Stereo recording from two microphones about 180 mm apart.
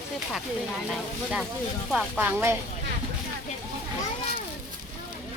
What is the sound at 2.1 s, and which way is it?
Speech, 15° right (ahead or behind).